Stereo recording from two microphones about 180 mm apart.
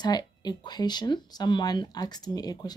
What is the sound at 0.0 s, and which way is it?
Speech, 20° left (ahead or behind).